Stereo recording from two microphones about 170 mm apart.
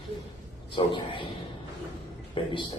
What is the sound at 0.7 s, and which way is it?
Speech, 30° left (ahead or behind).